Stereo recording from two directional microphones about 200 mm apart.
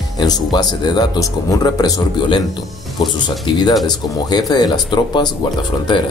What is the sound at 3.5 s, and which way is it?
Speech, 25° left (ahead or behind).